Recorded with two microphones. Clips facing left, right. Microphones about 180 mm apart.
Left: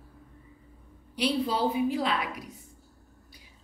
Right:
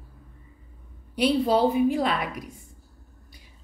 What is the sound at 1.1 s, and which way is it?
A woman's voice, 50° right (ahead or behind).